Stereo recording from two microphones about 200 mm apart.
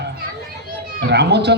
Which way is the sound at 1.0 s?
55° right (ahead or behind).